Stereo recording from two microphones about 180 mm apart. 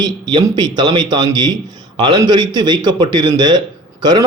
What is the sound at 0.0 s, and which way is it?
A man's voice, 25° right (ahead or behind).